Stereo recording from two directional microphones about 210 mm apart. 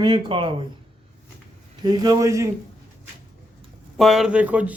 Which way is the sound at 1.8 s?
20° right (ahead or behind).